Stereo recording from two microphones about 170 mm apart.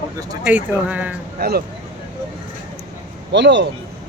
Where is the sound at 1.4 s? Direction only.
65° right (ahead or behind).